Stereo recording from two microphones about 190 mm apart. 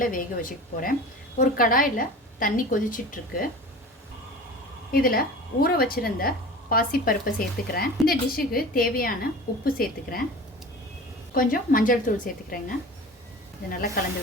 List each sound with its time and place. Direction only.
0.0 s a woman's voice: 45° left (ahead or behind)
4.9 s a woman's voice: 50° left (ahead or behind)
11.3 s a woman's voice: 50° left (ahead or behind)